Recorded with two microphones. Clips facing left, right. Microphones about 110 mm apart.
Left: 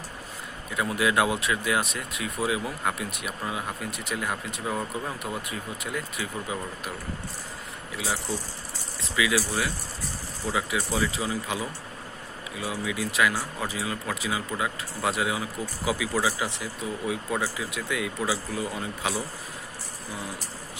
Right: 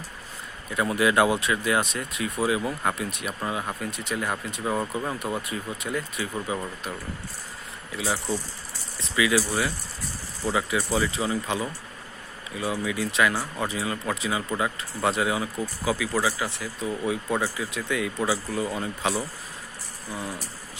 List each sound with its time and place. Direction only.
0.7 s speech: centre (ahead or behind)
7.9 s speech: centre (ahead or behind)
15.8 s speech: 15° left (ahead or behind)
17.1 s speech: centre (ahead or behind)